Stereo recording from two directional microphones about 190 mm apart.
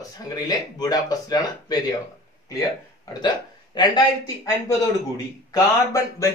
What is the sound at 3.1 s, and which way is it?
Speech, 20° left (ahead or behind).